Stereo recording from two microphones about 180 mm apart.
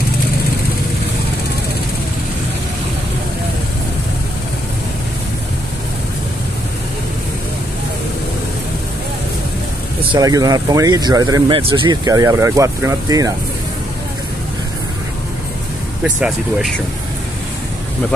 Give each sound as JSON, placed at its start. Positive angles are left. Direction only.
{"t": 10.1, "sound": "speech", "side_deg": -20}
{"t": 16.0, "sound": "speech", "side_deg": -5}